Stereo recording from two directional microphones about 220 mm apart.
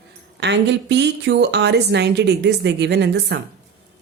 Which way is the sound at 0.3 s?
50° right (ahead or behind).